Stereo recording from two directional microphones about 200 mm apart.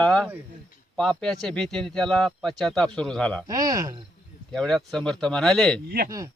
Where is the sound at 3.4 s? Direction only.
20° right (ahead or behind).